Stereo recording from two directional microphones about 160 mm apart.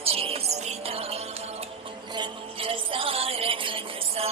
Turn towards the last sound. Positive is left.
turn(degrees=-35)  # may be behind; listen again after turning